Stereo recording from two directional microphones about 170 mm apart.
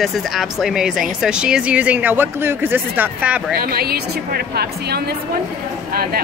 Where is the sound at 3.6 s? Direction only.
65° right (ahead or behind).